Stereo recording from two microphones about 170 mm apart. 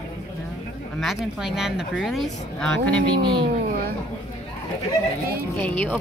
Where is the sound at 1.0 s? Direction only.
5° right (ahead or behind).